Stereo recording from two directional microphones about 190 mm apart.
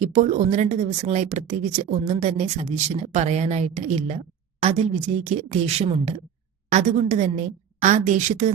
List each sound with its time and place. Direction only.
0.0 s speech: 40° right (ahead or behind)
5.2 s speech: 35° right (ahead or behind)